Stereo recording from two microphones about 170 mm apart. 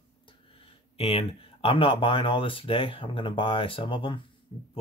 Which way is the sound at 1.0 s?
35° left (ahead or behind).